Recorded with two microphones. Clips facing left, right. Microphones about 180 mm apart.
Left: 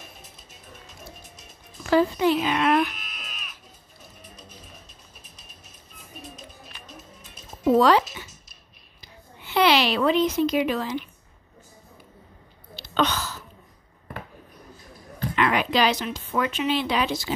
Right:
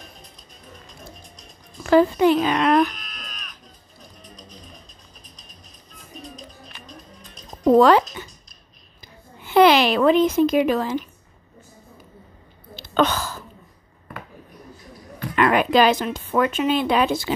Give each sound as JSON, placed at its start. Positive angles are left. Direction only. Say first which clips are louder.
{"t": 0.0, "sound": "music", "louder": "right 1 dB", "side_deg": 5}
{"t": 1.9, "sound": "speech", "louder": "right 5 dB", "side_deg": -50}
{"t": 2.9, "sound": "a sound", "louder": "right 2 dB", "side_deg": 5}
{"t": 4.0, "sound": "music", "louder": "right 2 dB", "side_deg": 5}
{"t": 7.6, "sound": "speech", "louder": "right 4 dB", "side_deg": -45}
{"t": 9.0, "sound": "a woman's voice", "louder": "right 3 dB", "side_deg": -50}
{"t": 12.7, "sound": "a sound", "louder": "right 4 dB", "side_deg": -50}
{"t": 15.3, "sound": "speech", "louder": "right 6 dB", "side_deg": -50}